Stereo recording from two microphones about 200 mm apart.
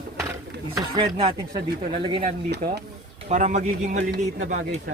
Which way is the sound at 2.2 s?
55° right (ahead or behind).